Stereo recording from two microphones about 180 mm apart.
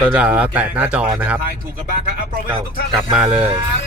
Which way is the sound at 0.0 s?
5° right (ahead or behind).